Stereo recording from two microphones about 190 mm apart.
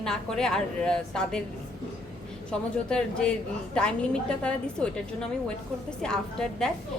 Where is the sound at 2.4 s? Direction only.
5° left (ahead or behind).